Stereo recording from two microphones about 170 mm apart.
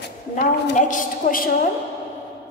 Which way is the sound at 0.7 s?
50° left (ahead or behind).